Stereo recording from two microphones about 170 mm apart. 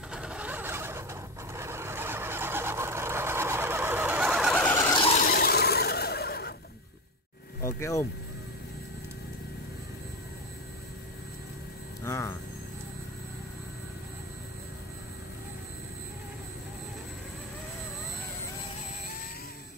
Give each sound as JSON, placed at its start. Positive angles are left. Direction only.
{"t": 0.1, "sound": "vehicle", "side_deg": -5}
{"t": 5.1, "sound": "a sound", "side_deg": 55}
{"t": 7.6, "sound": "vehicle", "side_deg": 15}
{"t": 12.0, "sound": "music", "side_deg": 15}